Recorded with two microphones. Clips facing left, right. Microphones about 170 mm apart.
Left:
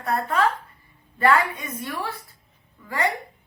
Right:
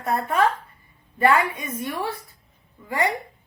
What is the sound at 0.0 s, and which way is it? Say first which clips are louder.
Speech: right 1 dB; 20° right (ahead or behind).